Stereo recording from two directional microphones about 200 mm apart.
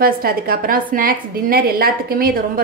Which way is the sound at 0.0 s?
45° right (ahead or behind).